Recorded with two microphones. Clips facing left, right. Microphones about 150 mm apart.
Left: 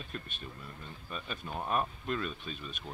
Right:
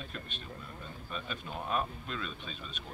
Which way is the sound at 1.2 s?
45° left (ahead or behind).